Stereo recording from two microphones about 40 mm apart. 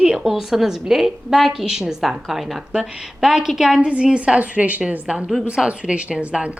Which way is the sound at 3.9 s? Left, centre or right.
Right.